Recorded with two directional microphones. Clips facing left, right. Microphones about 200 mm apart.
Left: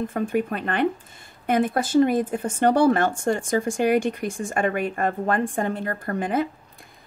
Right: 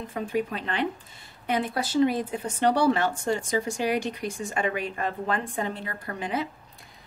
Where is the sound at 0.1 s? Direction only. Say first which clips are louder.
Left 4 dB; 50° left (ahead or behind).